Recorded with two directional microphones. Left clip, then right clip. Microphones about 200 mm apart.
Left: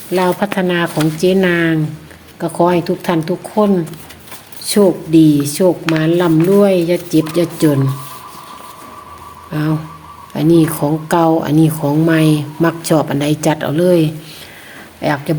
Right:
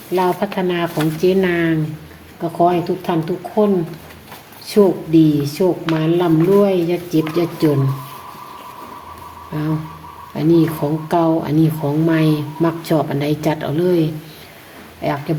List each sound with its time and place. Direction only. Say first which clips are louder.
0.1 s speech: left 3 dB; 35° left (ahead or behind)
2.4 s speech: left 2 dB; 40° left (ahead or behind)
9.5 s speech: left 4 dB; 30° left (ahead or behind)